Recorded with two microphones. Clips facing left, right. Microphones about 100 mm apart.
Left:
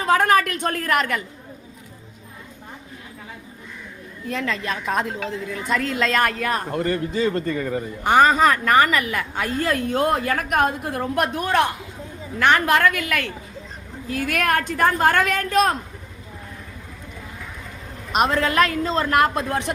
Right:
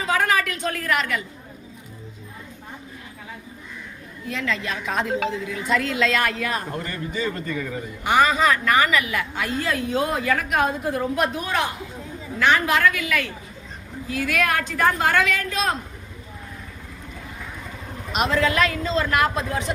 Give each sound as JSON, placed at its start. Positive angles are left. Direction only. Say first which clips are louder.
{"t": 0.0, "sound": "a woman's voice", "louder": "left 4 dB", "side_deg": 50}
{"t": 4.3, "sound": "a woman's voice", "louder": "left 1 dB", "side_deg": 45}
{"t": 7.4, "sound": "speech", "louder": "left 4 dB", "side_deg": 30}
{"t": 7.7, "sound": "a woman's voice", "louder": "left 3 dB", "side_deg": 45}
{"t": 18.1, "sound": "a woman's voice", "louder": "left 2 dB", "side_deg": 45}